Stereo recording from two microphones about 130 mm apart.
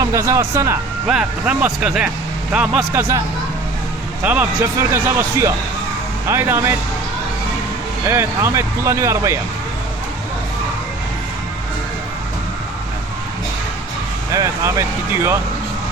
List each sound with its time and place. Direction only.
0.0 s speech: 25° right (ahead or behind)
1.0 s speech: 5° right (ahead or behind)
4.2 s speech: 10° right (ahead or behind)
8.0 s speech: 20° right (ahead or behind)
14.3 s speech: 25° right (ahead or behind)